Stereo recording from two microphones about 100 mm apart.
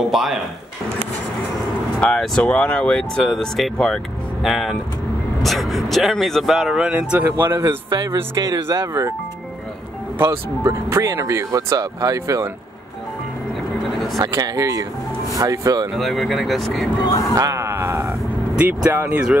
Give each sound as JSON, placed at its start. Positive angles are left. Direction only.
{"t": 0.1, "sound": "speech", "side_deg": -5}
{"t": 2.0, "sound": "speech", "side_deg": 10}
{"t": 7.2, "sound": "sheep", "side_deg": -25}
{"t": 7.9, "sound": "speech", "side_deg": -45}
{"t": 10.6, "sound": "speech", "side_deg": -25}
{"t": 14.1, "sound": "speech", "side_deg": -40}
{"t": 15.9, "sound": "speech", "side_deg": 0}
{"t": 17.0, "sound": "speech", "side_deg": 35}
{"t": 17.4, "sound": "sheep", "side_deg": -30}
{"t": 18.6, "sound": "speech", "side_deg": -20}